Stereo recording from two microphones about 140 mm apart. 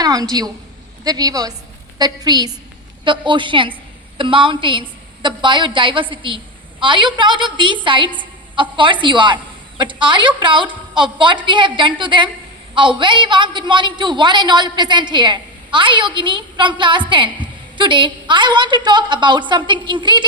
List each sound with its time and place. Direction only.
0.0 s a woman's voice: 30° right (ahead or behind)